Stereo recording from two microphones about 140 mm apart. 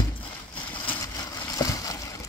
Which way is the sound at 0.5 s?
10° left (ahead or behind).